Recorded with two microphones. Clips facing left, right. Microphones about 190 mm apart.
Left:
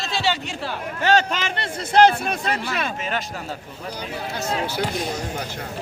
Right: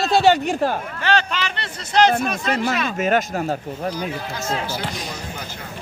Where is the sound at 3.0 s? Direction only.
45° right (ahead or behind).